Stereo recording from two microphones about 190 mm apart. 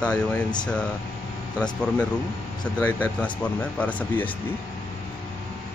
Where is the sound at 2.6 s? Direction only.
10° left (ahead or behind).